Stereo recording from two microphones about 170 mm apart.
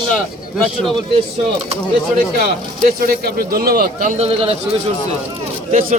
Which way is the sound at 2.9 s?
60° right (ahead or behind).